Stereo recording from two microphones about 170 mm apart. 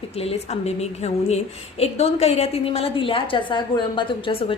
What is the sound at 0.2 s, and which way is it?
A woman's voice, 35° left (ahead or behind).